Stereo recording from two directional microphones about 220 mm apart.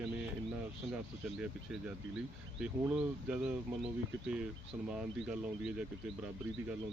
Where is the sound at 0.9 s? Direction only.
5° right (ahead or behind).